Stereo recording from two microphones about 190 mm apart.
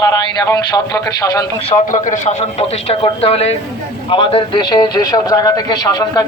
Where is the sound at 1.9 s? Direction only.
40° left (ahead or behind).